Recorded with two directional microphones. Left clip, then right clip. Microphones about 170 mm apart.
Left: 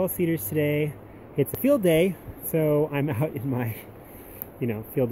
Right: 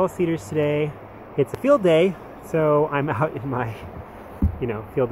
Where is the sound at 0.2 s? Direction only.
35° left (ahead or behind).